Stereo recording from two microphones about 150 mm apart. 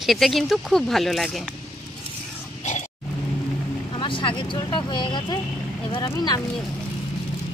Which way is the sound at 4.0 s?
35° left (ahead or behind).